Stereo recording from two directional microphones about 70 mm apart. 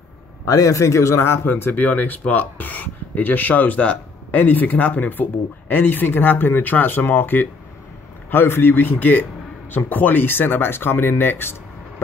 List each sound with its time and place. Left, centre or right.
0.5 s a man's voice: left